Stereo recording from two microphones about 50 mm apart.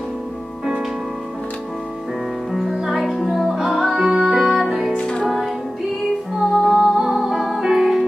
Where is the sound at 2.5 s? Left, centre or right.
Centre.